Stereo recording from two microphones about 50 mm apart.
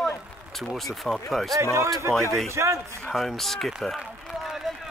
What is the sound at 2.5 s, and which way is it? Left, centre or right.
Speech, right.